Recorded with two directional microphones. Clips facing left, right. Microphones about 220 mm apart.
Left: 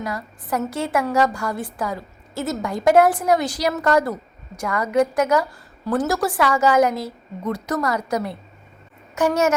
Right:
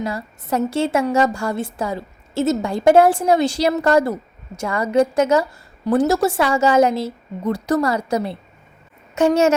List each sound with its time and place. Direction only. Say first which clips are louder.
0.0 s a woman's voice: right 3 dB; 25° right (ahead or behind)